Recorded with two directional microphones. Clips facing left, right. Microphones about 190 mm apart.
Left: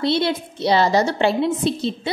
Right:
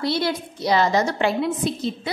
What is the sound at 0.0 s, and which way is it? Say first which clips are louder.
A woman's voice: left 3 dB; 25° left (ahead or behind).